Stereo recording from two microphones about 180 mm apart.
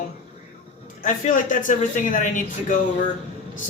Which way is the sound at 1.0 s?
45° left (ahead or behind).